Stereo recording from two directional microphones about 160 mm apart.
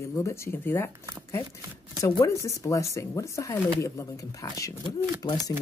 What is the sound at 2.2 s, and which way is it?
Speech, 20° left (ahead or behind).